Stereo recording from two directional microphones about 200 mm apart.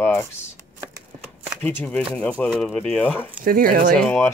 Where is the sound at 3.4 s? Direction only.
45° right (ahead or behind).